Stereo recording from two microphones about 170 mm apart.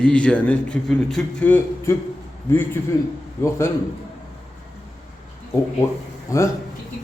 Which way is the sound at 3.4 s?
15° left (ahead or behind).